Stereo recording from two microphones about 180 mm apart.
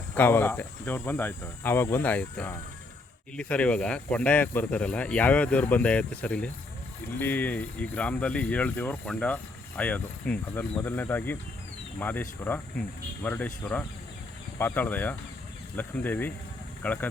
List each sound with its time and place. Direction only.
0.1 s speech: 10° left (ahead or behind)